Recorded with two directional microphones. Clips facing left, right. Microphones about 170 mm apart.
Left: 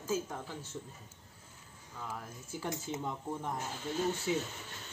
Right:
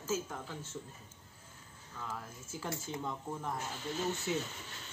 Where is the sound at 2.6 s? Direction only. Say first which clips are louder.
Left 2 dB; 15° left (ahead or behind).